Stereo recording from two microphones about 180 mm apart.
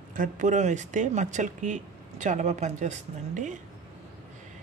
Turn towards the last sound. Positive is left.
turn(degrees=-40)  # may be behind; listen again after turning